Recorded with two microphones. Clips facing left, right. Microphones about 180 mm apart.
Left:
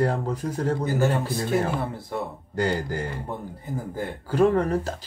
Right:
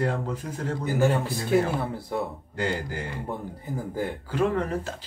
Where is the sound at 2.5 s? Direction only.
40° left (ahead or behind).